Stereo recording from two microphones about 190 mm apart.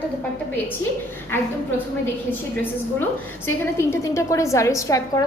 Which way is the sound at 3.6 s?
15° left (ahead or behind).